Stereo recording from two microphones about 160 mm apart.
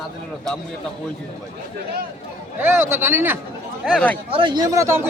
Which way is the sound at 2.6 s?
15° right (ahead or behind).